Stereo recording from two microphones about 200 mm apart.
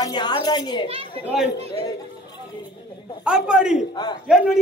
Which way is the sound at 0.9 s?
25° right (ahead or behind).